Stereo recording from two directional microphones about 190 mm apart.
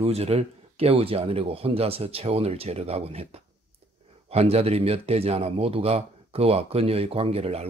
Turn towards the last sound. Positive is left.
turn(degrees=-30)  # may be behind; listen again after turning